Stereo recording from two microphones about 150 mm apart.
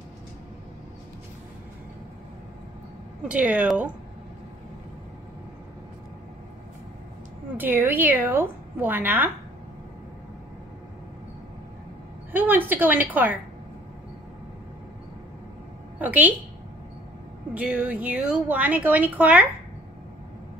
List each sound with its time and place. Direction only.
3.3 s speech: 10° right (ahead or behind)
7.5 s speech: 10° right (ahead or behind)
12.3 s speech: 15° right (ahead or behind)
16.0 s speech: 10° right (ahead or behind)
17.6 s speech: 10° right (ahead or behind)